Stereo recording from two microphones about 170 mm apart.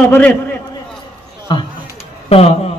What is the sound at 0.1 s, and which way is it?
Speech, 10° left (ahead or behind).